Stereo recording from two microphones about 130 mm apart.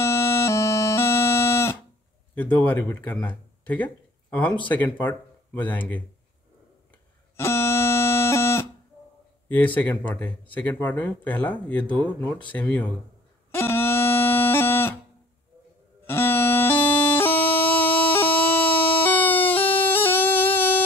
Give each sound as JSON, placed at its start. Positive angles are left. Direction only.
{"t": 0.0, "sound": "music", "side_deg": 20}
{"t": 2.3, "sound": "speech", "side_deg": 10}
{"t": 7.3, "sound": "a sound", "side_deg": 20}
{"t": 9.8, "sound": "speech", "side_deg": 10}
{"t": 13.5, "sound": "a sound", "side_deg": 15}
{"t": 16.1, "sound": "bagpipes", "side_deg": 15}